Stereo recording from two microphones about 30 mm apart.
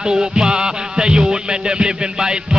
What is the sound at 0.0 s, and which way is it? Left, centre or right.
Music, right.